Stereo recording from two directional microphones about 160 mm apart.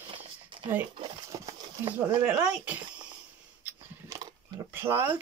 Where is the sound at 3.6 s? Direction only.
15° right (ahead or behind).